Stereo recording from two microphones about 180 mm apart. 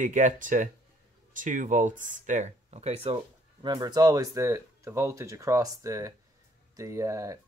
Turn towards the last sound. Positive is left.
turn(degrees=-15)  # may be behind; listen again after turning